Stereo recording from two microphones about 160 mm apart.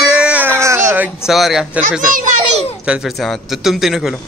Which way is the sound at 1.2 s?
Centre (ahead or behind).